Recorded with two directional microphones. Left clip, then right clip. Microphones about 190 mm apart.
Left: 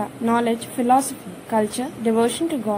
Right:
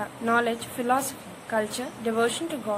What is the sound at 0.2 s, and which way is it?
A woman's voice, 15° left (ahead or behind).